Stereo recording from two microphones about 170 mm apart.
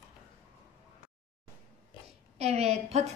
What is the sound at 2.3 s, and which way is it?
Speech, 40° right (ahead or behind).